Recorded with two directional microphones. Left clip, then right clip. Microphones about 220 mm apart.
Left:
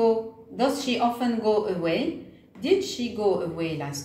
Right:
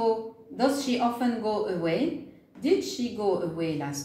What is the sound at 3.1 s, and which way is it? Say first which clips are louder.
Speech: left 3 dB; 15° left (ahead or behind).